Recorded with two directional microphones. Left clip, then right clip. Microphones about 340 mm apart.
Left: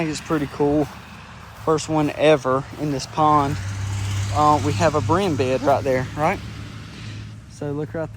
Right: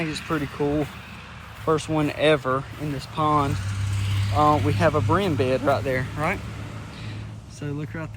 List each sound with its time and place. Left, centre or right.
0.0 s speech: centre
3.9 s vehicle: centre
4.8 s speech: centre